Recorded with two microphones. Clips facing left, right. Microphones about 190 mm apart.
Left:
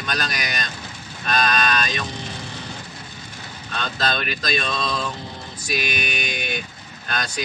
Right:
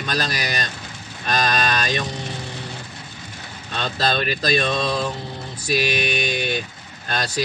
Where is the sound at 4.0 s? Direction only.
35° right (ahead or behind).